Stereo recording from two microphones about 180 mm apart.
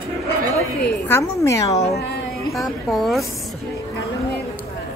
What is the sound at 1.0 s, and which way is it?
Speech, 15° left (ahead or behind).